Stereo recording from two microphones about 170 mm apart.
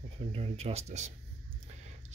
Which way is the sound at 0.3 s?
35° right (ahead or behind).